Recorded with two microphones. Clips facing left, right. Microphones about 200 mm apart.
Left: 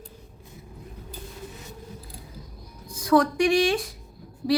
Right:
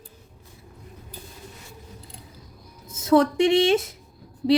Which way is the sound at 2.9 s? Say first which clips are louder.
Right 2 dB; 25° right (ahead or behind).